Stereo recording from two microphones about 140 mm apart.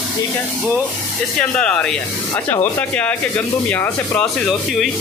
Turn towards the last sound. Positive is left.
turn(degrees=15)  # may be behind; listen again after turning